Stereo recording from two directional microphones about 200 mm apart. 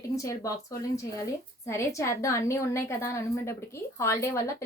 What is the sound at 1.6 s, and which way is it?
A woman's voice, 15° left (ahead or behind).